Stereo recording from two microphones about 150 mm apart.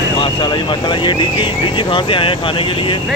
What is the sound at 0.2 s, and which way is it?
Speech, 35° left (ahead or behind).